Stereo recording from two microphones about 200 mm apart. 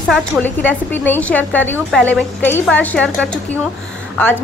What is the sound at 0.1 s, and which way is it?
A woman's voice, 5° left (ahead or behind).